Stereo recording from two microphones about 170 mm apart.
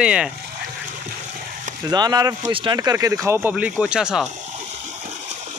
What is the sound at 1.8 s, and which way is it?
Speech, 25° right (ahead or behind).